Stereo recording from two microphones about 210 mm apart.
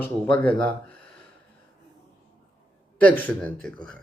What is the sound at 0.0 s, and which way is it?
Speech, 10° left (ahead or behind).